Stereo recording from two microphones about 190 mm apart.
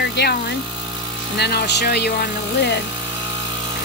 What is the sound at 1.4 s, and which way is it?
Speech, 60° left (ahead or behind).